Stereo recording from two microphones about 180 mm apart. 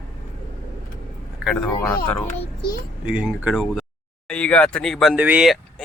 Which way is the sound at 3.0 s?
5° right (ahead or behind).